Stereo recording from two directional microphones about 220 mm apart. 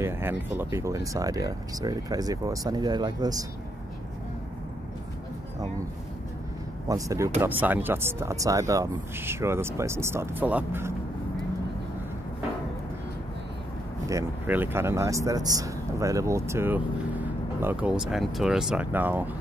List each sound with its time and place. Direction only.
0.0 s speech: 10° right (ahead or behind)
6.9 s speech: 15° right (ahead or behind)
14.0 s speech: 10° right (ahead or behind)